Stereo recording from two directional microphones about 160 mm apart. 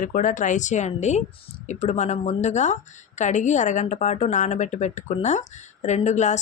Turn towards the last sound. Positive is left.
turn(degrees=50)  # may be behind; listen again after turning